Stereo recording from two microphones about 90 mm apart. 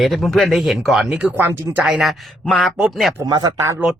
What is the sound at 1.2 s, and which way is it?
Speech, 20° right (ahead or behind).